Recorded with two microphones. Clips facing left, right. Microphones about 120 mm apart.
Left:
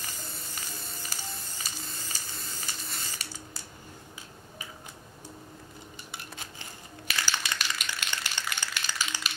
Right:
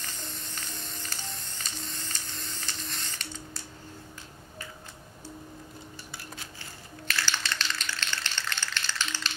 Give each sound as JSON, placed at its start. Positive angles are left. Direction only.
{"t": 0.0, "sound": "music", "side_deg": 10}
{"t": 6.1, "sound": "tap", "side_deg": 15}